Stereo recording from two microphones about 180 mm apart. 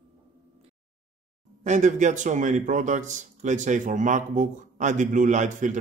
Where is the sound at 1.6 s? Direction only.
40° right (ahead or behind).